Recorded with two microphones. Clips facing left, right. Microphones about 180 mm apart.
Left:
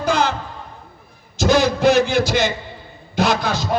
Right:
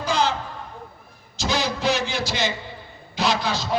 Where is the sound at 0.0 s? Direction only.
50° left (ahead or behind).